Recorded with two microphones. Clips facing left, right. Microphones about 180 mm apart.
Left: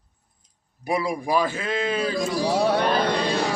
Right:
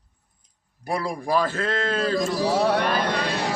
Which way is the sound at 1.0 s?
15° left (ahead or behind).